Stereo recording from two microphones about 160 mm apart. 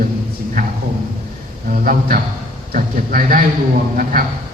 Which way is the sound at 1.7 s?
60° right (ahead or behind).